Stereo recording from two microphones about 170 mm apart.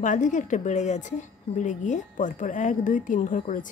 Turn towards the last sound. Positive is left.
turn(degrees=50)  # may be behind; listen again after turning